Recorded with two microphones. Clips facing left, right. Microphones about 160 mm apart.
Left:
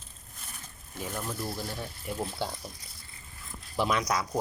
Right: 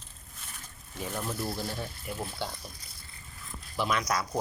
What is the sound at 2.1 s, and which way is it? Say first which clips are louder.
Speech: left 4 dB; 5° left (ahead or behind).